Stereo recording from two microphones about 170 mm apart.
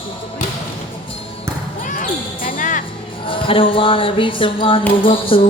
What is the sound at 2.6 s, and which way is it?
Music, 50° left (ahead or behind).